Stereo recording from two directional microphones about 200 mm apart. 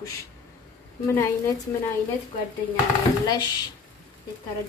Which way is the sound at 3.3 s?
20° left (ahead or behind).